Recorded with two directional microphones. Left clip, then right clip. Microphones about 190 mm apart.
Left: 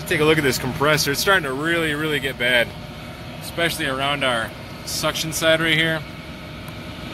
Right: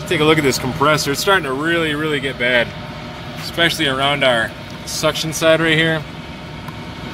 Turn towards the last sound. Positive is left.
turn(degrees=-10)  # may be behind; listen again after turning